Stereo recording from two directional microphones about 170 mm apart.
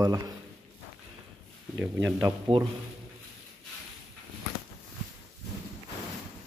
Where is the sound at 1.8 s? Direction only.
15° right (ahead or behind).